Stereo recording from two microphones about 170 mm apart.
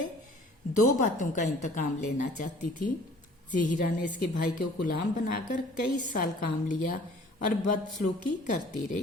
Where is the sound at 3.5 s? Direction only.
50° left (ahead or behind).